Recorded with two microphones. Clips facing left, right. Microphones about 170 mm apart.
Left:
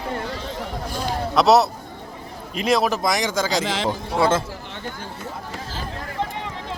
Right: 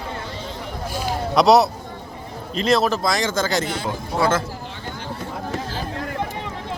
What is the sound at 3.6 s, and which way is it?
Speech, 90° left.